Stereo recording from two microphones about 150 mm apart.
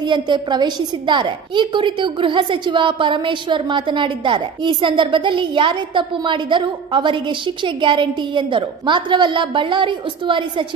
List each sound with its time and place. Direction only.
0.0 s a woman's voice: 30° right (ahead or behind)